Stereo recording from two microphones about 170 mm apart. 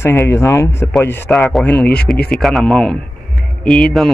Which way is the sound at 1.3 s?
Centre (ahead or behind).